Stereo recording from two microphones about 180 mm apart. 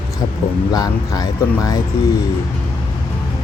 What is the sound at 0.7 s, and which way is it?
Speech, 20° left (ahead or behind).